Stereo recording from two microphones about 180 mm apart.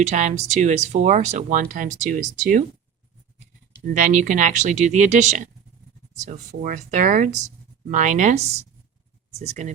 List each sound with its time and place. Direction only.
0.0 s speech: 40° right (ahead or behind)